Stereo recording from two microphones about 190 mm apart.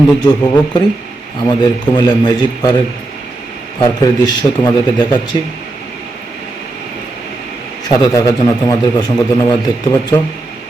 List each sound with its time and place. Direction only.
0.2 s a man's voice: 20° left (ahead or behind)
3.8 s a man's voice: 20° left (ahead or behind)
7.9 s a man's voice: 20° left (ahead or behind)